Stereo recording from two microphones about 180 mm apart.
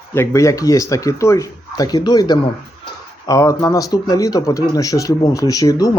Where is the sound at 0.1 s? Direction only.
15° left (ahead or behind).